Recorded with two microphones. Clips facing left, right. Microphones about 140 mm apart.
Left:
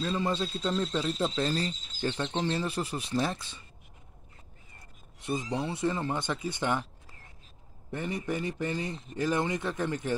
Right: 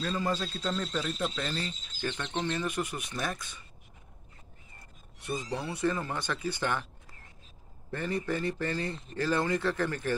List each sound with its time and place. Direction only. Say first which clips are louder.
0.0 s speech: left 2 dB; 25° left (ahead or behind)
5.2 s speech: left 3 dB; 25° left (ahead or behind)
7.9 s a man's voice: right 1 dB; 15° left (ahead or behind)